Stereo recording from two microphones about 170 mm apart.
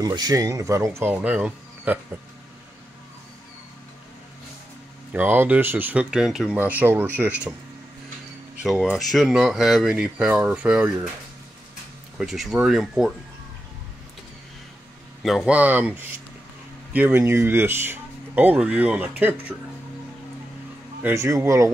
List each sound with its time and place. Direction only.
0.0 s speech: 25° right (ahead or behind)
5.1 s speech: 10° right (ahead or behind)
8.6 s speech: 5° right (ahead or behind)
12.2 s speech: centre (ahead or behind)
15.2 s speech: 5° right (ahead or behind)
21.0 s speech: 15° right (ahead or behind)